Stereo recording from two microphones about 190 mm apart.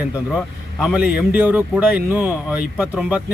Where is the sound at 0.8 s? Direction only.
5° right (ahead or behind).